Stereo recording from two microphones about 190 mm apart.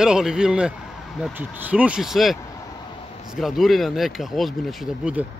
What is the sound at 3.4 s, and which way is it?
Speech, centre (ahead or behind).